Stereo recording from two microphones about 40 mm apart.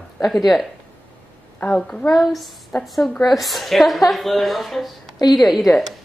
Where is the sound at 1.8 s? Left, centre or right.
Left.